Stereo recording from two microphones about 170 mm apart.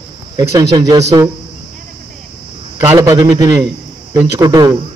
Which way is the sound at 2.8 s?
15° right (ahead or behind).